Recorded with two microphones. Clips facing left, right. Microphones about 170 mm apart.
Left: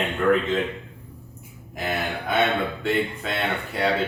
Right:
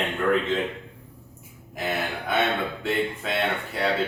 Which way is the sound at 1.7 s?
Centre (ahead or behind).